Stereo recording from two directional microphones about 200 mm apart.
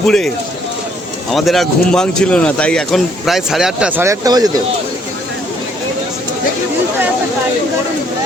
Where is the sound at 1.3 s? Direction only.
Centre (ahead or behind); by 4.5 s 20° right (ahead or behind).